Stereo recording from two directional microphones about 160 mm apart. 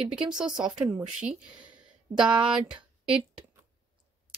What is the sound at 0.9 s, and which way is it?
Speech, 5° right (ahead or behind).